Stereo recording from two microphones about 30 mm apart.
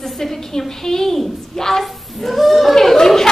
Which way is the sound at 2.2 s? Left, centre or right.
Centre.